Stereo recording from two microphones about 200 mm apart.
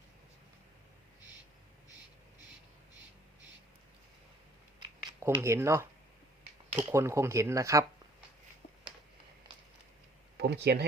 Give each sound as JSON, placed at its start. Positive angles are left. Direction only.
{"t": 4.8, "sound": "shuffling cards", "side_deg": -15}
{"t": 6.9, "sound": "speech", "side_deg": -15}
{"t": 10.3, "sound": "speech", "side_deg": -55}